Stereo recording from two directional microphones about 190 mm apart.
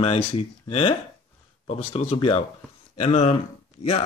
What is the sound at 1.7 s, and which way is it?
Speech, 30° left (ahead or behind).